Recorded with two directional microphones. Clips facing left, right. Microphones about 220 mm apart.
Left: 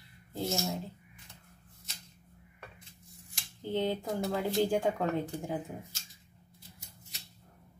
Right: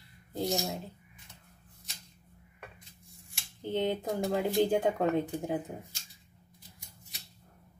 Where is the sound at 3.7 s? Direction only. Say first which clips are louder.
Right 1 dB; 20° right (ahead or behind).